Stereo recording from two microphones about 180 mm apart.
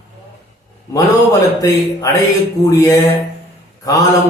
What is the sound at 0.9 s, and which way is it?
Mantra, 20° left (ahead or behind).